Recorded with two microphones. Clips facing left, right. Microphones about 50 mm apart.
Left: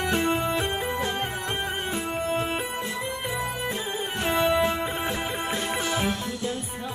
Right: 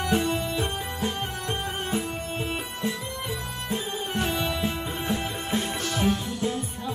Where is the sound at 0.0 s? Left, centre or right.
Left.